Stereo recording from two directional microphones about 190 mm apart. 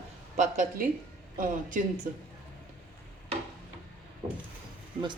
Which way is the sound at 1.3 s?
45° right (ahead or behind).